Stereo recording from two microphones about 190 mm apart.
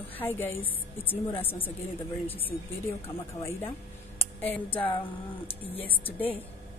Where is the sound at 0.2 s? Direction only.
10° left (ahead or behind).